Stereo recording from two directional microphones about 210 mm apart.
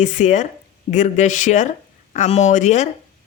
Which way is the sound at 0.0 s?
35° left (ahead or behind).